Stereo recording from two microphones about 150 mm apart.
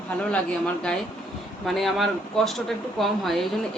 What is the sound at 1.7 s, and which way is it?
Speech, centre (ahead or behind).